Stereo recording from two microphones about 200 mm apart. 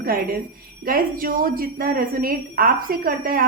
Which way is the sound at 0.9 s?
45° right (ahead or behind).